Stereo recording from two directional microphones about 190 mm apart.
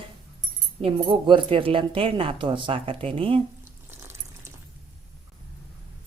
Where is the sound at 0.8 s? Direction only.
30° right (ahead or behind).